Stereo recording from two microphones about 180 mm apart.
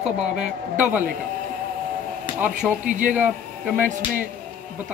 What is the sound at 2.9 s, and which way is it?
Speech, 45° right (ahead or behind).